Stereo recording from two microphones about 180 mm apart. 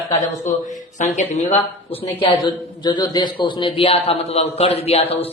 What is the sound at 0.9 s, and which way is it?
Speech, 45° left (ahead or behind).